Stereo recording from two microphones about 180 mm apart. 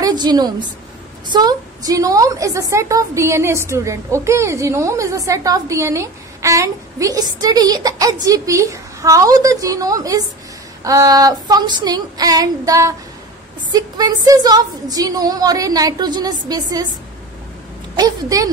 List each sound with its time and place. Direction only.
0.0 s a woman's voice: 25° right (ahead or behind)
17.9 s a woman's voice: 20° right (ahead or behind)